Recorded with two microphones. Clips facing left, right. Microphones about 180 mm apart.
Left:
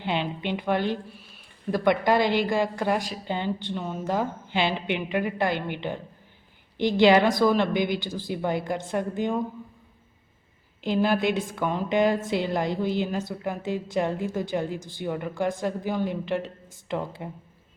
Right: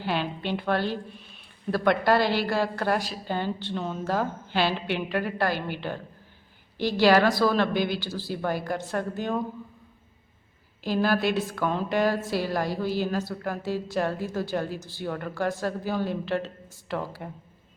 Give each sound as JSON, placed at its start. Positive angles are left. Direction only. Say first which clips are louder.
{"t": 0.0, "sound": "a woman's voice", "louder": "left 1 dB", "side_deg": 20}
{"t": 10.8, "sound": "a woman's voice", "louder": "left 1 dB", "side_deg": 20}